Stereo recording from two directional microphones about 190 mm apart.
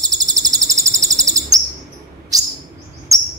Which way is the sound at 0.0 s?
20° right (ahead or behind).